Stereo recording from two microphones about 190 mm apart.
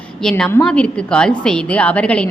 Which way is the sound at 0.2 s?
5° left (ahead or behind).